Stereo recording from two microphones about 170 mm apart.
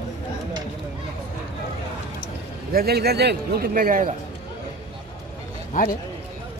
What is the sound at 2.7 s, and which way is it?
A man's voice, 65° right (ahead or behind).